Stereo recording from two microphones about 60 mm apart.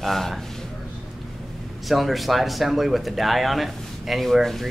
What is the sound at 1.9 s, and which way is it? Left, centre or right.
Speech, centre.